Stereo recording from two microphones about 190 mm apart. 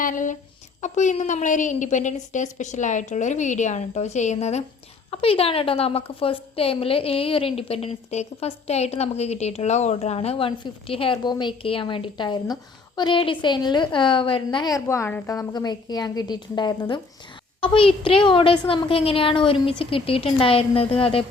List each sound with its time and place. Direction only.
0.0 s a woman's voice: 45° left (ahead or behind)